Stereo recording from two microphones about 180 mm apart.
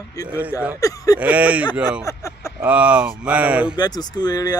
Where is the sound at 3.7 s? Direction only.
20° left (ahead or behind).